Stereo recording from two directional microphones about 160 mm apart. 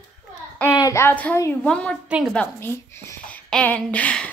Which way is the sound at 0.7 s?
20° left (ahead or behind).